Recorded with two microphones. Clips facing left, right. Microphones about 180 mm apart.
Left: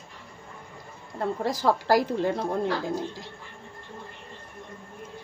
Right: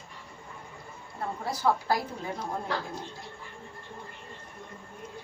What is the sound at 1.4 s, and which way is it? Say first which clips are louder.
Speech: left 2 dB; 90° left.